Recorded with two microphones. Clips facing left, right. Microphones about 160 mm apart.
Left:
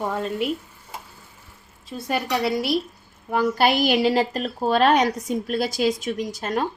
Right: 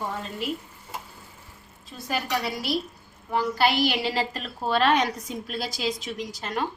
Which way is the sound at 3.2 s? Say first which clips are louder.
Left 4 dB; 50° left (ahead or behind).